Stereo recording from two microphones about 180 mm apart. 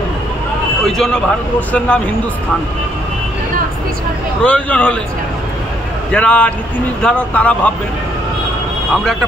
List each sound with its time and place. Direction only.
0.8 s speech: centre (ahead or behind)
4.4 s speech: 5° left (ahead or behind)
6.1 s speech: 5° left (ahead or behind)